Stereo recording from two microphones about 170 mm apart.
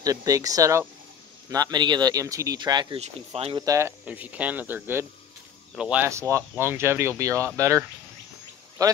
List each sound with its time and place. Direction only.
0.0 s speech: 20° right (ahead or behind)
3.6 s speech: 15° right (ahead or behind)
6.3 s speech: 15° right (ahead or behind)